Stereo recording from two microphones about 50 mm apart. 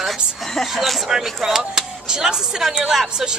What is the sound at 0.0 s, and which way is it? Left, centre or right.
A woman's voice, centre.